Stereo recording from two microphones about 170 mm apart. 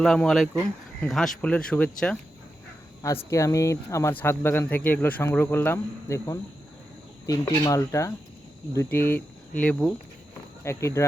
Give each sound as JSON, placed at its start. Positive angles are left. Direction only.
{"t": 0.0, "sound": "speech", "side_deg": 5}
{"t": 3.2, "sound": "speech", "side_deg": 20}